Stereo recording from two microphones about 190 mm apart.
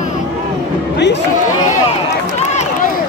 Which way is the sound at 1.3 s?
40° left (ahead or behind).